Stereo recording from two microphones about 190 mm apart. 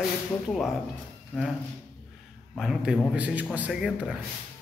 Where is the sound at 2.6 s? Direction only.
5° right (ahead or behind).